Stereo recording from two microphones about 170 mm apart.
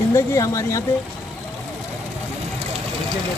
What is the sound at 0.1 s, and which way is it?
Speech, 20° left (ahead or behind).